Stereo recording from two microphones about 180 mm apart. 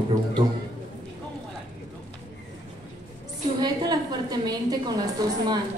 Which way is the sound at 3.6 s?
20° right (ahead or behind).